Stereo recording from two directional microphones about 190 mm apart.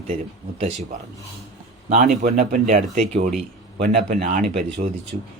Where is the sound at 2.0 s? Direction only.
45° right (ahead or behind).